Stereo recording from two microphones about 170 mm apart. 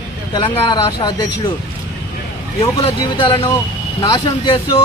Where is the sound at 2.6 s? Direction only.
30° left (ahead or behind).